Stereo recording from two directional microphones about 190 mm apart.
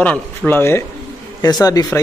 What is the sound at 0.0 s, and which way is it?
Speech, 5° left (ahead or behind).